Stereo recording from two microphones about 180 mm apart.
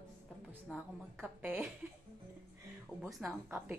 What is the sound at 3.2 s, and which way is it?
Speech, 10° right (ahead or behind).